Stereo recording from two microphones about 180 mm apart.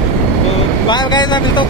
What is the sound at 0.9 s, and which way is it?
Speech, 25° left (ahead or behind).